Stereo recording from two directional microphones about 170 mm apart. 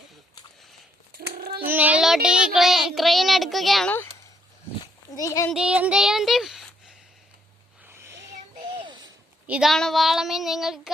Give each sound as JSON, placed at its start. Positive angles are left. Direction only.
{"t": 1.1, "sound": "a sound", "side_deg": -65}
{"t": 1.6, "sound": "child singing", "side_deg": -10}
{"t": 5.1, "sound": "a child's voice", "side_deg": 20}
{"t": 5.5, "sound": "speech", "side_deg": -5}
{"t": 7.9, "sound": "a sound", "side_deg": -15}
{"t": 9.5, "sound": "child singing", "side_deg": 0}